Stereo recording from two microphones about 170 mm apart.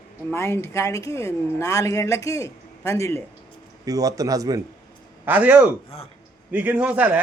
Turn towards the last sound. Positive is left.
turn(degrees=-10)  # may be behind; listen again after turning